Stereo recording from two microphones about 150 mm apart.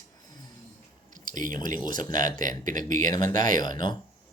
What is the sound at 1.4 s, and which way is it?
Speech, 65° right (ahead or behind).